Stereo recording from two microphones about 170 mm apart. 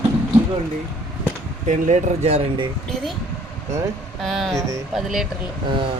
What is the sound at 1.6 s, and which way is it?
Speech, 45° right (ahead or behind).